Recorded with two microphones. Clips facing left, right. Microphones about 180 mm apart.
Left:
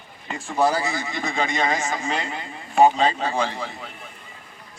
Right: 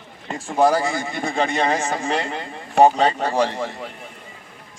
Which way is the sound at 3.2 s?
65° right (ahead or behind).